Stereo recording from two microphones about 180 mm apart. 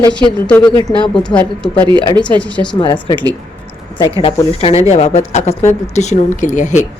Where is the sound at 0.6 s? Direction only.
25° left (ahead or behind).